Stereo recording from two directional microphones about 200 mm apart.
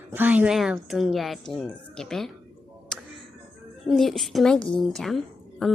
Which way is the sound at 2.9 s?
5° left (ahead or behind).